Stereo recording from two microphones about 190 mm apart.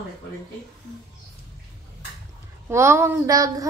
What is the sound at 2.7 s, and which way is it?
Speech, 15° right (ahead or behind).